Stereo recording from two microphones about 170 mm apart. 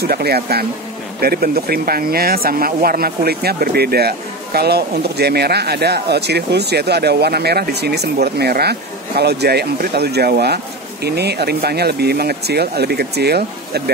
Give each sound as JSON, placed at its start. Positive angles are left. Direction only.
{"t": 0.0, "sound": "speech", "side_deg": -65}